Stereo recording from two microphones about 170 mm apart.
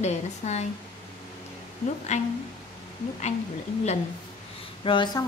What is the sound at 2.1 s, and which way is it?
Speech, 40° left (ahead or behind).